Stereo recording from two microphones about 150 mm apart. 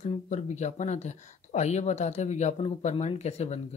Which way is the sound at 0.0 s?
50° left (ahead or behind).